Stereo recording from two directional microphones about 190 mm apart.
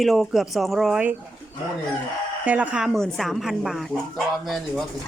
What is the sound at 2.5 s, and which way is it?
A woman's voice, 5° right (ahead or behind).